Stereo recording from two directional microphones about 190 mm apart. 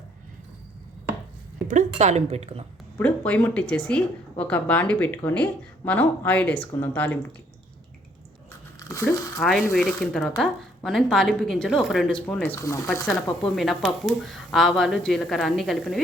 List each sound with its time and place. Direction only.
1.6 s speech: 40° right (ahead or behind)
3.0 s speech: 5° left (ahead or behind)
9.4 s speech: centre (ahead or behind)
13.2 s speech: centre (ahead or behind)